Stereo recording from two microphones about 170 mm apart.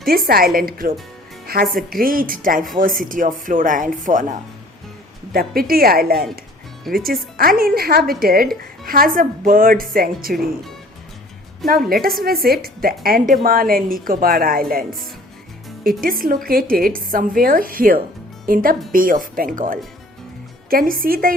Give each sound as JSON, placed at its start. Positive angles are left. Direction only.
{"t": 0.3, "sound": "a woman's voice", "side_deg": -60}
{"t": 11.6, "sound": "a woman's voice", "side_deg": 0}
{"t": 12.2, "sound": "a woman's voice", "side_deg": -60}